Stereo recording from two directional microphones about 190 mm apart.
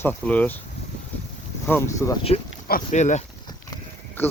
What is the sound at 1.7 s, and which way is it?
Speech, 15° left (ahead or behind).